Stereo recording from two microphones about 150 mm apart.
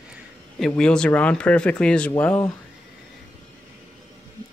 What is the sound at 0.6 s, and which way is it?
Speech, 5° left (ahead or behind).